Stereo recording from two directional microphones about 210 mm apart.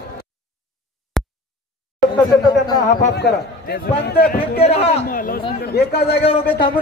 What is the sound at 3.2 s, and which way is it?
A man's voice, 50° left (ahead or behind).